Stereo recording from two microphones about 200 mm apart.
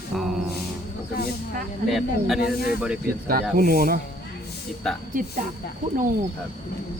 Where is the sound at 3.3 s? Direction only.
45° right (ahead or behind).